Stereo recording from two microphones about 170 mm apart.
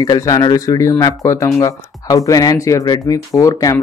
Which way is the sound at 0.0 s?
20° left (ahead or behind).